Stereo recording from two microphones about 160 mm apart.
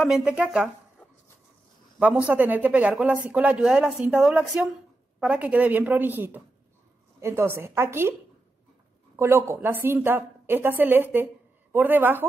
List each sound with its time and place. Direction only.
0.0 s speech: 5° right (ahead or behind)
2.0 s speech: 10° right (ahead or behind)
9.1 s speech: 15° right (ahead or behind)